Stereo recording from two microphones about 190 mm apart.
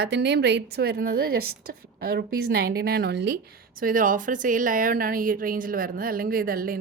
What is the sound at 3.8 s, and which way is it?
Speech, 45° right (ahead or behind).